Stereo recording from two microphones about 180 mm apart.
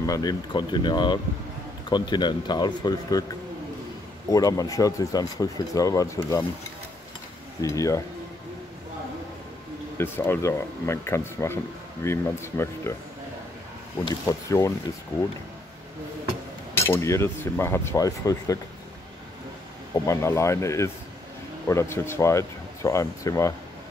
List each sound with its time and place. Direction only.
0.0 s speech: 20° left (ahead or behind)
4.3 s speech: 20° left (ahead or behind)
7.6 s speech: 15° left (ahead or behind)
9.9 s speech: 10° left (ahead or behind)
14.0 s speech: 20° left (ahead or behind)
16.7 s speech: 15° left (ahead or behind)
19.9 s speech: 15° left (ahead or behind)